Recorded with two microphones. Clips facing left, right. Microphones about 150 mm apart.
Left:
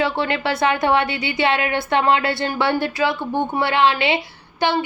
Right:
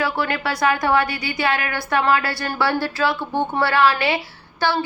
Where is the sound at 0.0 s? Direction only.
25° left (ahead or behind).